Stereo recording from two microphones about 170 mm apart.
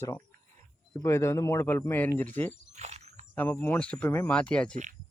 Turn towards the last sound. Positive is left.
turn(degrees=5)  # may be behind; listen again after turning